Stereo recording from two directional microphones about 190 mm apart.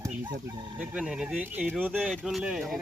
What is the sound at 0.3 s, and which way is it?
Speech, 25° right (ahead or behind).